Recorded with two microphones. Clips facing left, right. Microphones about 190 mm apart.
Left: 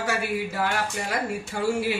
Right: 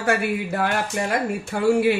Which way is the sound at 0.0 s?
55° right (ahead or behind).